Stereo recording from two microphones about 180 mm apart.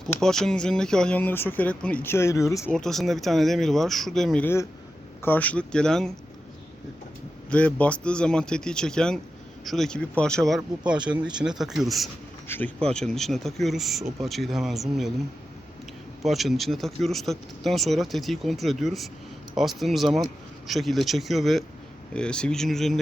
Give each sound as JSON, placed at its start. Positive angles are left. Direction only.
{"t": 0.2, "sound": "speech", "side_deg": 5}
{"t": 2.7, "sound": "speech", "side_deg": 0}
{"t": 7.5, "sound": "speech", "side_deg": 5}
{"t": 10.9, "sound": "speech", "side_deg": -25}
{"t": 11.3, "sound": "speech", "side_deg": -5}
{"t": 16.2, "sound": "speech", "side_deg": 0}